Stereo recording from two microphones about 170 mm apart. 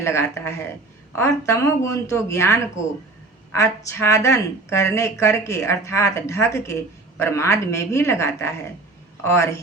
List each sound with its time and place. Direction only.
0.0 s speech: 15° left (ahead or behind)